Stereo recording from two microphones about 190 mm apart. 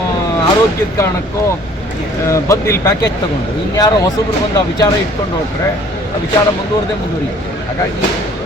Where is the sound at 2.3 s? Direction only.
15° left (ahead or behind).